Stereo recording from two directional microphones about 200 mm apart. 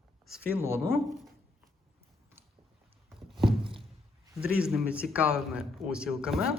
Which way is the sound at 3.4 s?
25° right (ahead or behind).